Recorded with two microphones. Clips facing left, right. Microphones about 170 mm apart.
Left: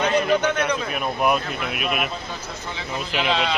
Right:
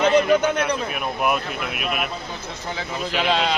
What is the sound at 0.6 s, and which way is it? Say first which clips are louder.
Speech: even; 5° right (ahead or behind).